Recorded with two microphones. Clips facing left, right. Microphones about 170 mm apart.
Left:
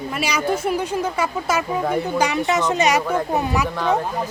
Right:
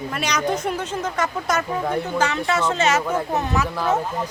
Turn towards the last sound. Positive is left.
turn(degrees=-5)  # may be behind; listen again after turning